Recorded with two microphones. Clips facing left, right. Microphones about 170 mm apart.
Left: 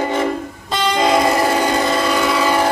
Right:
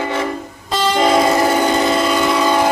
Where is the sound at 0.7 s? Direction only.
Centre (ahead or behind).